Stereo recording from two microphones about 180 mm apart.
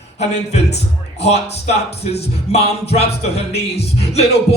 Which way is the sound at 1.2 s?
35° left (ahead or behind).